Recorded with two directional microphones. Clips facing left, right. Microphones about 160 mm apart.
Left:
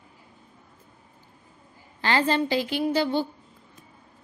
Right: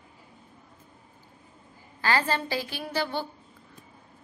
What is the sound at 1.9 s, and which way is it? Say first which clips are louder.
A woman's voice: left 3 dB; 25° left (ahead or behind).